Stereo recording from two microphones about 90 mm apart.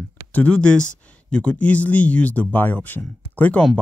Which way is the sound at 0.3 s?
15° left (ahead or behind).